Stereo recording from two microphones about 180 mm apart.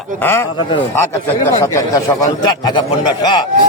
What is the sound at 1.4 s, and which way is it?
A man's voice, 15° left (ahead or behind).